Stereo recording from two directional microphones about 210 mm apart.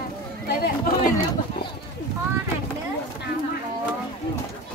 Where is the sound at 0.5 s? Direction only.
45° left (ahead or behind).